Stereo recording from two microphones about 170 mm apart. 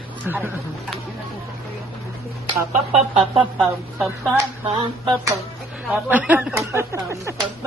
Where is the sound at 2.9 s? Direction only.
35° right (ahead or behind).